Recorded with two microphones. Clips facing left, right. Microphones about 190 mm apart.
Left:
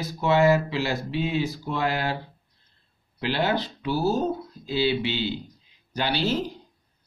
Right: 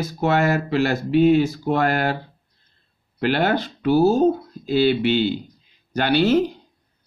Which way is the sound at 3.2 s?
55° right (ahead or behind).